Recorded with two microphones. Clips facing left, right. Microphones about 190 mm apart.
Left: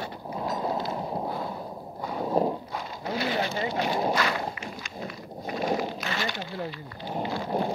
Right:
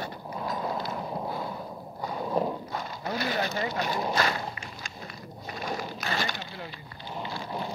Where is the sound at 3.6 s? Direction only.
40° right (ahead or behind).